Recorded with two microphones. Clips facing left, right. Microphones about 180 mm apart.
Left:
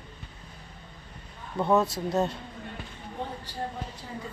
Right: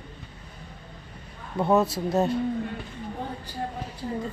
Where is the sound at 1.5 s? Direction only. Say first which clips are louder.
Right 2 dB; 15° right (ahead or behind).